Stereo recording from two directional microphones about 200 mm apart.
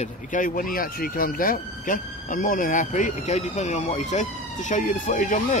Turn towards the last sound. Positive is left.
turn(degrees=40)  # may be behind; listen again after turning